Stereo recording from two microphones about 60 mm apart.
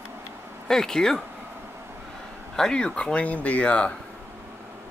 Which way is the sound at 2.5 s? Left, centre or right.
Centre.